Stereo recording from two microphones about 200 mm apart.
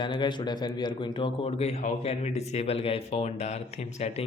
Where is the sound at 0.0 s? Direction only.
25° left (ahead or behind).